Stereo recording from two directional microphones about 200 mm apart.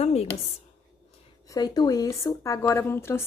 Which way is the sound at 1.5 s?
20° left (ahead or behind).